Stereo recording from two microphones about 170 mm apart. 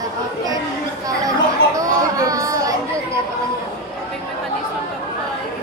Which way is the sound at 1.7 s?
20° right (ahead or behind).